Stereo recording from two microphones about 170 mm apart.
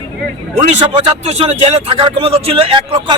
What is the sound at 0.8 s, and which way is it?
A man's voice, 35° right (ahead or behind).